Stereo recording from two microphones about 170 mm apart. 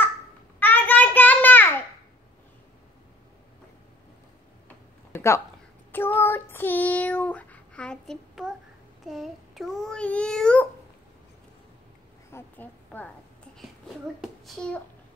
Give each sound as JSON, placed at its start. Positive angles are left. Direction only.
{"t": 0.6, "sound": "child singing", "side_deg": 10}
{"t": 5.1, "sound": "a sound", "side_deg": 15}
{"t": 5.9, "sound": "child singing", "side_deg": 10}
{"t": 9.0, "sound": "a child's voice", "side_deg": 0}
{"t": 12.3, "sound": "a woman's voice", "side_deg": 10}
{"t": 14.2, "sound": "a child's voice", "side_deg": 0}